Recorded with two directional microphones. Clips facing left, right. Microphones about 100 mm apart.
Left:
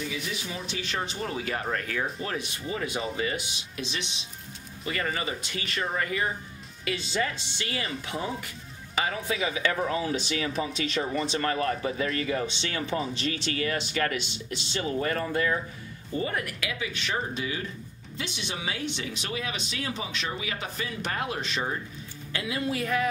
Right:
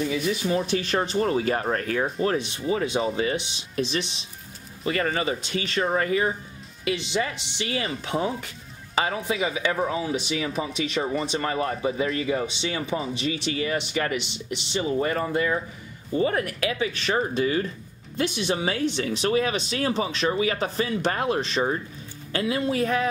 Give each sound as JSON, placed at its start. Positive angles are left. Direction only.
{"t": 0.1, "sound": "speech", "side_deg": -45}
{"t": 2.2, "sound": "speech", "side_deg": -30}
{"t": 4.8, "sound": "speech", "side_deg": -35}
{"t": 6.8, "sound": "speech", "side_deg": -20}
{"t": 7.7, "sound": "speech", "side_deg": -30}
{"t": 16.2, "sound": "speech", "side_deg": -35}